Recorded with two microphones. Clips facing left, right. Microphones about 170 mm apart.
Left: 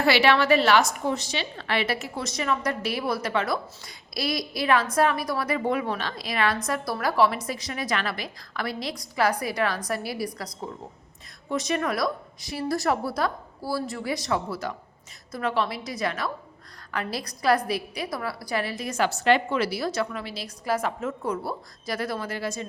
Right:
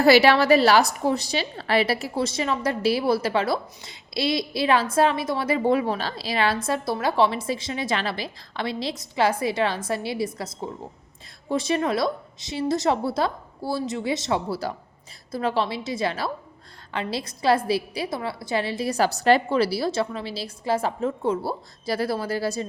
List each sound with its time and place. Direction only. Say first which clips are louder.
0.0 s a woman's voice: right 5 dB; 35° right (ahead or behind)